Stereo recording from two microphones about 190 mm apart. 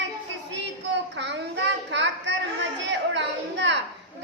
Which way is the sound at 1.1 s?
70° right (ahead or behind).